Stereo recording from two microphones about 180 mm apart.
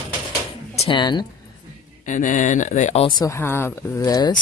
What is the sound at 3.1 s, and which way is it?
Speech, 20° left (ahead or behind).